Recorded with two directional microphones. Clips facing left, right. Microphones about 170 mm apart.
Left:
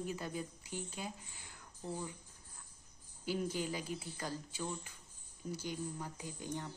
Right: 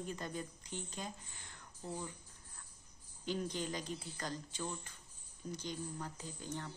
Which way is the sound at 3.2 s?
10° left (ahead or behind).